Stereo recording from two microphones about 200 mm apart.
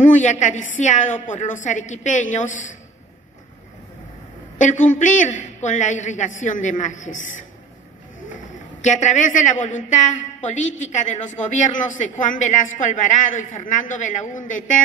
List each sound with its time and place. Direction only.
0.0 s a woman's voice: 35° left (ahead or behind)
4.6 s a woman's voice: 40° left (ahead or behind)
8.8 s a woman's voice: 35° left (ahead or behind)